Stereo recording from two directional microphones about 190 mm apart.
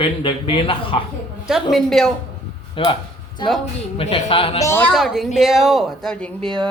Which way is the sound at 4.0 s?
30° left (ahead or behind).